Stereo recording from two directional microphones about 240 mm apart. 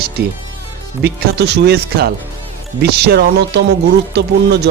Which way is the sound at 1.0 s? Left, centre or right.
Right.